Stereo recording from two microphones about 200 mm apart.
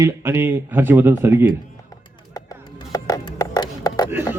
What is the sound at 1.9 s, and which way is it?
Music, 20° left (ahead or behind).